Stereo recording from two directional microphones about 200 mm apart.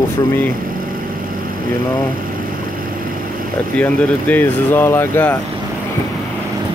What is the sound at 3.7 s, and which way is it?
Speech, 10° left (ahead or behind).